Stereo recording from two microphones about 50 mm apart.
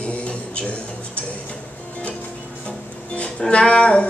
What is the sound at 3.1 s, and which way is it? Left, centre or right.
Music, left.